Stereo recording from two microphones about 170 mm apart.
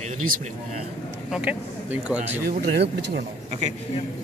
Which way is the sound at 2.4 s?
60° right (ahead or behind).